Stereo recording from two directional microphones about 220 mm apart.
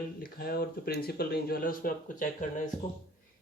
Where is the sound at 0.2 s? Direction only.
45° left (ahead or behind).